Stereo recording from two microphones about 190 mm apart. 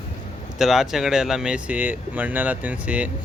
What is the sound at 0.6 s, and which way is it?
Speech, centre (ahead or behind).